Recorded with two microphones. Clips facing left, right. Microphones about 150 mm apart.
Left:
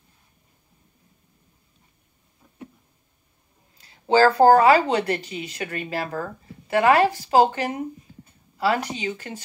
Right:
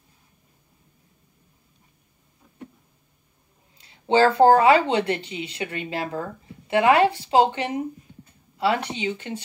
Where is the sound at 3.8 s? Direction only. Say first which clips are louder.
Left 1 dB; 30° right (ahead or behind).